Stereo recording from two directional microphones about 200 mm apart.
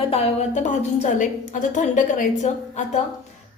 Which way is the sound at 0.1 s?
30° left (ahead or behind).